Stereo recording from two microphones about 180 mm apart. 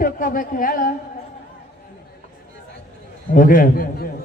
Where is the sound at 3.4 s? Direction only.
50° left (ahead or behind).